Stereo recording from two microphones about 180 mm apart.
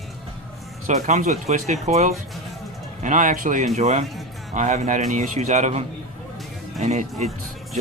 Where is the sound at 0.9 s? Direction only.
40° right (ahead or behind).